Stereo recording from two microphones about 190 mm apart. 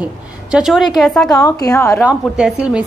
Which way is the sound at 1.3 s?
20° left (ahead or behind).